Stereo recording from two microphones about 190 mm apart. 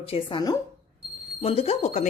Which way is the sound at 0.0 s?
30° left (ahead or behind).